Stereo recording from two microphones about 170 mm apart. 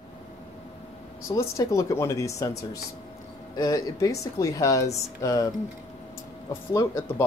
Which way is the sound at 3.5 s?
20° left (ahead or behind).